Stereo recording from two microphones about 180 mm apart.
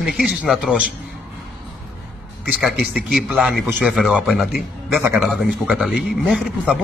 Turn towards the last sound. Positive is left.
turn(degrees=0)  # may be behind; listen again after turning